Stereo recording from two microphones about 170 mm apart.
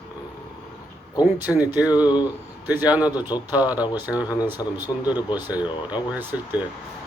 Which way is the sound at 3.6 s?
10° right (ahead or behind).